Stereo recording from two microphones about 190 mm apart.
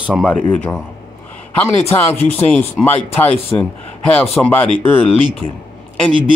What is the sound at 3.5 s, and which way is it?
Speech, 25° left (ahead or behind).